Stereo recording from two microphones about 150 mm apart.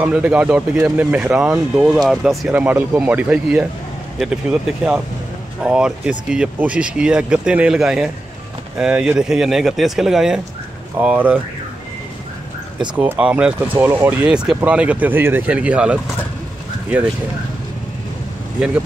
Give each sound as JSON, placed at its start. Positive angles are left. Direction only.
{"t": 0.0, "sound": "speech", "side_deg": -10}
{"t": 12.9, "sound": "speech", "side_deg": -10}